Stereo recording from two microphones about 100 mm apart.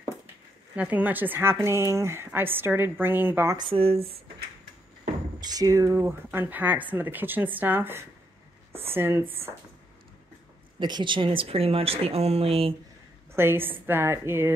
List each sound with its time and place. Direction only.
0.7 s speech: 15° right (ahead or behind)
3.5 s speech: 50° right (ahead or behind)
3.8 s speech: 70° right (ahead or behind)
5.4 s speech: 40° right (ahead or behind); by 9.2 s 25° right (ahead or behind)
10.8 s speech: 50° right (ahead or behind); by 12.7 s 75° right (ahead or behind)
13.3 s speech: 25° right (ahead or behind)